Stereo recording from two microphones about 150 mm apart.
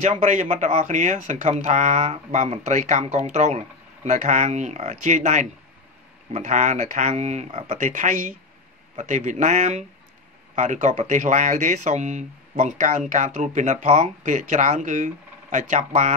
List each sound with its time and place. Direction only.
0.0 s speech: 50° right (ahead or behind)